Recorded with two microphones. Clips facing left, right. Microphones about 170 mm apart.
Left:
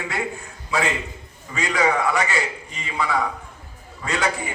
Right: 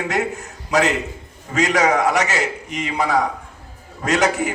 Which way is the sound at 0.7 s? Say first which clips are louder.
Right 6 dB; 85° right.